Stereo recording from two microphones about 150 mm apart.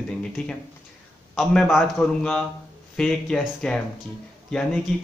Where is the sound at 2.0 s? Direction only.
5° left (ahead or behind).